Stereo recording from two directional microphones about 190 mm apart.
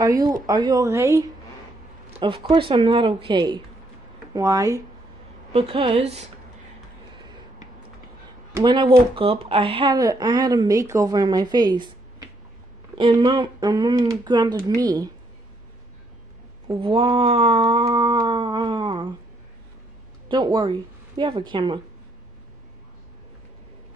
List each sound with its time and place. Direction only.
0.0 s speech: 20° right (ahead or behind)
2.1 s speech: 30° right (ahead or behind)
5.5 s speech: 30° right (ahead or behind)
8.5 s speech: 25° right (ahead or behind)
16.6 s a sound: 25° right (ahead or behind)
20.2 s a woman's voice: 25° right (ahead or behind)